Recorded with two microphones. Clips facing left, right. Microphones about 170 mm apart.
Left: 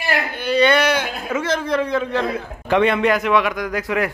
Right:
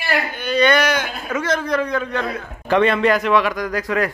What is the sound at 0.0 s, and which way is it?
Speech, 30° left (ahead or behind).